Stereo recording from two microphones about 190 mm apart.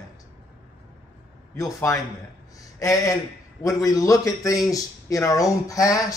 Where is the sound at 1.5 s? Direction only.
15° left (ahead or behind).